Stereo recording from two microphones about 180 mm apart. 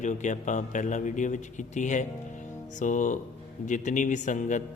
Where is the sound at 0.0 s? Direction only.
45° left (ahead or behind).